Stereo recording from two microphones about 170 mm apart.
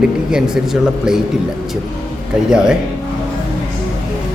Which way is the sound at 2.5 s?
5° right (ahead or behind).